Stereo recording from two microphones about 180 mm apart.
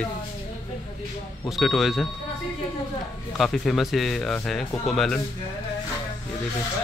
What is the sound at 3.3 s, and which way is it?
Speech, centre (ahead or behind).